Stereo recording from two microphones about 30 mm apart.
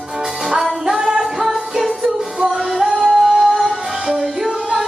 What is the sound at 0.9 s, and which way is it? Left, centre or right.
Music, centre.